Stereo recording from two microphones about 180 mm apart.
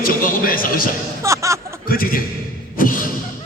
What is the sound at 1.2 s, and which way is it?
Snicker, 15° right (ahead or behind).